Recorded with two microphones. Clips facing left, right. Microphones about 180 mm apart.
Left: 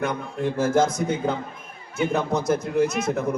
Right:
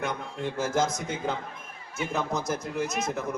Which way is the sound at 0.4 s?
30° left (ahead or behind).